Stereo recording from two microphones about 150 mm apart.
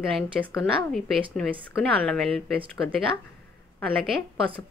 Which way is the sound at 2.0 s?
5° left (ahead or behind).